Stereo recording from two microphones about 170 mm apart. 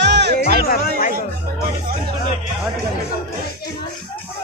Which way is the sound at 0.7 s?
55° left (ahead or behind).